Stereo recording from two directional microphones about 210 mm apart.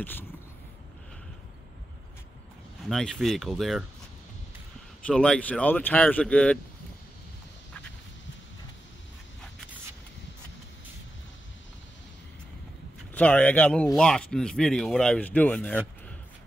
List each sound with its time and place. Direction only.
2.9 s speech: centre (ahead or behind)
5.0 s speech: 5° left (ahead or behind)
13.1 s speech: 5° left (ahead or behind)